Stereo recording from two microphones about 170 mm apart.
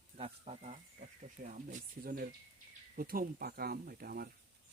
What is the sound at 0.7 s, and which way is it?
Speech, 50° right (ahead or behind).